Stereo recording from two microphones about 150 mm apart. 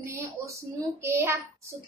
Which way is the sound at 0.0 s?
15° right (ahead or behind).